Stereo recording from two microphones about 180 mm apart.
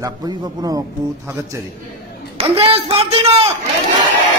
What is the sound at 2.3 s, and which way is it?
A man's voice, 30° right (ahead or behind).